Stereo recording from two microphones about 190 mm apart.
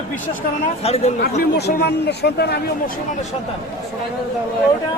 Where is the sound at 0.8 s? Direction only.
35° left (ahead or behind).